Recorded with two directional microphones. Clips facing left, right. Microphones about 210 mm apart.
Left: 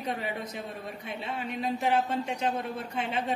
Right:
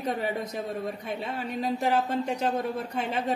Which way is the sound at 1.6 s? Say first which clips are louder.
Right 2 dB; 40° right (ahead or behind).